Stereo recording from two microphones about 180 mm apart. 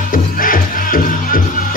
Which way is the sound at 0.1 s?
50° left (ahead or behind).